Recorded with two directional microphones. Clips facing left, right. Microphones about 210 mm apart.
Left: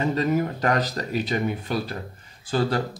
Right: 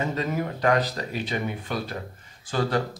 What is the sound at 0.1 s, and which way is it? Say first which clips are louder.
Speech: left 5 dB; 40° left (ahead or behind).